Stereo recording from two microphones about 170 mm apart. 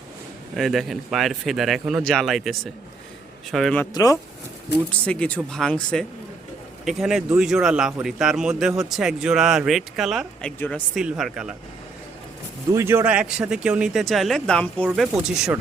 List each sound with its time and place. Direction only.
0.5 s speech: centre (ahead or behind)
3.9 s speech: 20° left (ahead or behind)
4.9 s speech: 5° left (ahead or behind)
10.9 s speech: 5° right (ahead or behind)
12.7 s speech: 15° right (ahead or behind)